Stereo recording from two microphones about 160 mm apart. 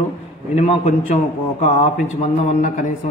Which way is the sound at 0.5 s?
45° left (ahead or behind).